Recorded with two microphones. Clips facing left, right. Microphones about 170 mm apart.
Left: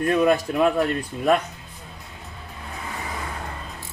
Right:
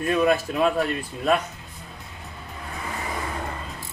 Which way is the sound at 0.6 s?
20° left (ahead or behind).